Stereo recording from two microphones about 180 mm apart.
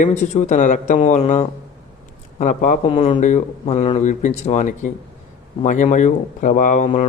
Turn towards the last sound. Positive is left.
turn(degrees=40)  # may be behind; listen again after turning